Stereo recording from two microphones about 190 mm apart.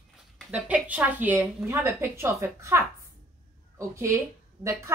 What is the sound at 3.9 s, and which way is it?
Speech, 15° right (ahead or behind).